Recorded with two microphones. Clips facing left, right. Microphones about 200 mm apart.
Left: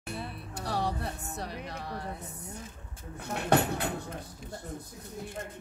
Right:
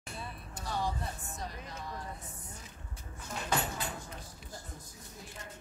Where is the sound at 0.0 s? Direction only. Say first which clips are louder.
Left 6 dB; 65° left (ahead or behind).